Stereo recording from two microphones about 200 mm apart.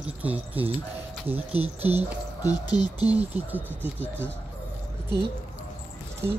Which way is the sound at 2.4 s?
20° left (ahead or behind).